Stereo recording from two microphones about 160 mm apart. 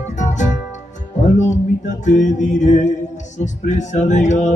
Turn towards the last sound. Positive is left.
turn(degrees=45)  # may be behind; listen again after turning